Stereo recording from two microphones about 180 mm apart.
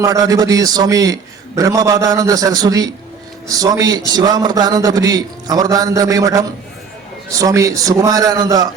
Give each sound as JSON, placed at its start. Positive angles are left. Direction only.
{"t": 0.0, "sound": "a man's voice", "side_deg": -20}